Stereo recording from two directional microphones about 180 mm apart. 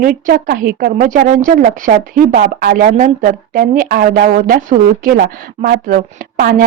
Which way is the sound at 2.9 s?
45° right (ahead or behind).